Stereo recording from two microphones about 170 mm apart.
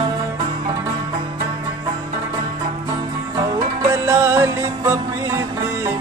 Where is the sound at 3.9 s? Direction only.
15° right (ahead or behind).